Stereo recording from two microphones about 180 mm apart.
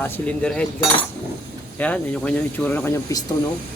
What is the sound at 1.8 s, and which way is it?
Speech, 10° left (ahead or behind).